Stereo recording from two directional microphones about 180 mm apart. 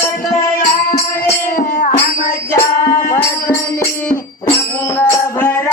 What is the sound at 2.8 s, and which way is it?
Music, 15° left (ahead or behind).